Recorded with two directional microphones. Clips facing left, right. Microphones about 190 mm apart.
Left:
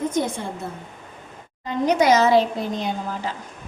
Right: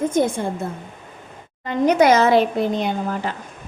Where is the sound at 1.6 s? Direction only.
55° right (ahead or behind).